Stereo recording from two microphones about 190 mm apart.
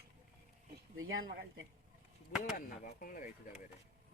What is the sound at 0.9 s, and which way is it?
Speech, 90° right.